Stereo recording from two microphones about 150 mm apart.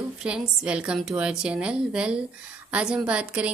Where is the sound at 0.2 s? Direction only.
5° right (ahead or behind).